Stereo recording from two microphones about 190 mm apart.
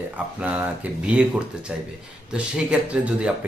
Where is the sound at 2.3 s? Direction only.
5° right (ahead or behind).